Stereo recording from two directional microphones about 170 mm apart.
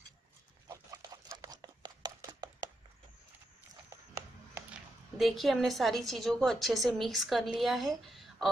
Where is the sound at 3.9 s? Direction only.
15° right (ahead or behind).